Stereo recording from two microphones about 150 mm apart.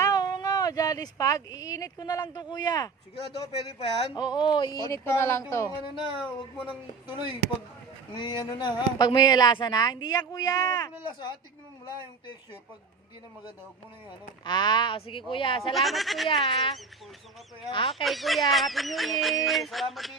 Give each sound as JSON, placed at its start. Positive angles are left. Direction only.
{"t": 0.0, "sound": "speech", "side_deg": 25}
{"t": 3.3, "sound": "speech", "side_deg": 40}
{"t": 4.2, "sound": "speech", "side_deg": 30}
{"t": 5.0, "sound": "speech", "side_deg": 15}
{"t": 6.6, "sound": "speech", "side_deg": 35}
{"t": 14.4, "sound": "speech", "side_deg": 30}
{"t": 15.7, "sound": "speech", "side_deg": 0}
{"t": 16.3, "sound": "speech", "side_deg": 35}
{"t": 17.9, "sound": "speech", "side_deg": 0}